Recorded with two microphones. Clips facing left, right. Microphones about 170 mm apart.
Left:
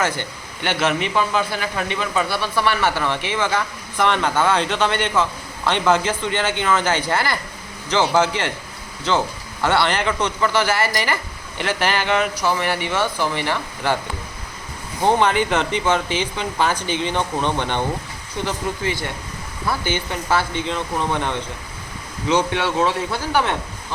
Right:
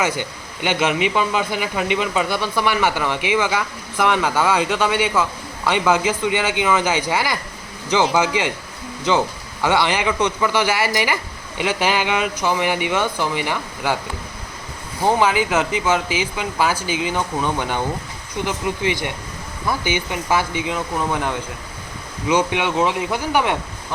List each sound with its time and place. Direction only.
0.0 s speech: 10° right (ahead or behind)
9.6 s speech: 10° right (ahead or behind)
15.0 s speech: 5° right (ahead or behind)